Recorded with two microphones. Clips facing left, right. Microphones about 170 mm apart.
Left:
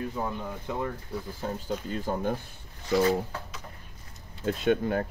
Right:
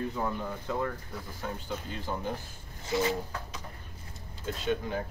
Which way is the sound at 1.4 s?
35° left (ahead or behind).